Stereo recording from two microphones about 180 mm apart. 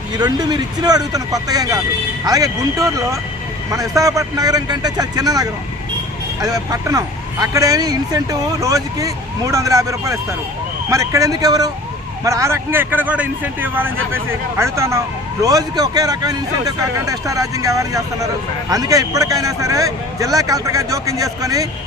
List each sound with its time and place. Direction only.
0.2 s speech: 20° right (ahead or behind)